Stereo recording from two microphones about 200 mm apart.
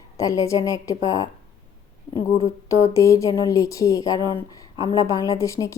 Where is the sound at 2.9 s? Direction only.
15° left (ahead or behind).